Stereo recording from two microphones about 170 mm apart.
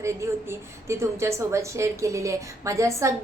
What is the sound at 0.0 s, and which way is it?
A woman's voice, 15° right (ahead or behind).